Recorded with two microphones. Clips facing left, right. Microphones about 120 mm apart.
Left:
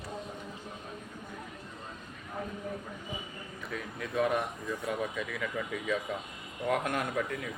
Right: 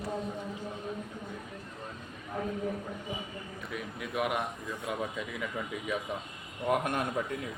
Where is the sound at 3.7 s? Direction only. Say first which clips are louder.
Left 2 dB; 15° right (ahead or behind).